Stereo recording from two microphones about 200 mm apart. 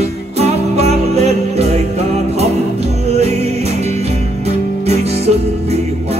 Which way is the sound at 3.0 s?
30° right (ahead or behind).